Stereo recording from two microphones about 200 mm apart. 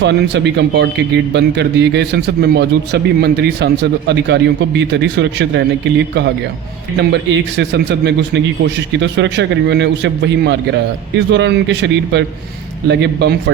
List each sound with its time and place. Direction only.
0.0 s a man's voice: 60° right (ahead or behind)
6.9 s a man's voice: 60° right (ahead or behind)